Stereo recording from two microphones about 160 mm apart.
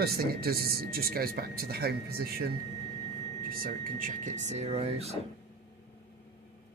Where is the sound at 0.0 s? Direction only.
75° right (ahead or behind); by 5.2 s 40° right (ahead or behind).